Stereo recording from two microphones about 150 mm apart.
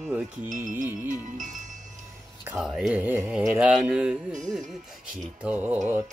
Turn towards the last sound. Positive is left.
turn(degrees=-10)  # may be behind; listen again after turning